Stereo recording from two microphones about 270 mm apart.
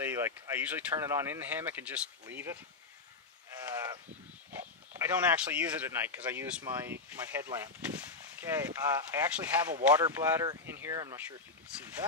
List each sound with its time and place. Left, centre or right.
0.0 s speech: centre
4.6 s speech: centre